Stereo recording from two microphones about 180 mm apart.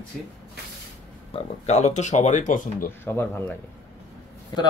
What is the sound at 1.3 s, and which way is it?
Speech, 40° left (ahead or behind).